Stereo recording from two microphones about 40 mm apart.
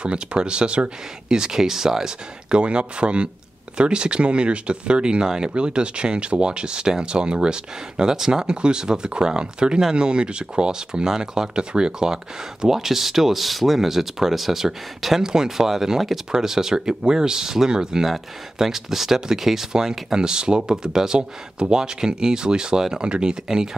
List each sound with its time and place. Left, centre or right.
0.0 s speech: right
1.3 s speech: centre
2.5 s speech: right
12.6 s speech: centre
18.0 s speech: centre